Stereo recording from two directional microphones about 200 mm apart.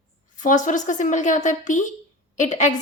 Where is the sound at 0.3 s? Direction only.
40° left (ahead or behind).